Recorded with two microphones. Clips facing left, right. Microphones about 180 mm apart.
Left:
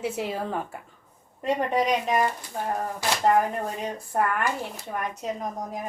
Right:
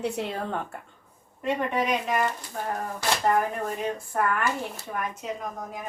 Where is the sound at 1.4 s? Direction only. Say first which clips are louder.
Left 2 dB; 35° left (ahead or behind).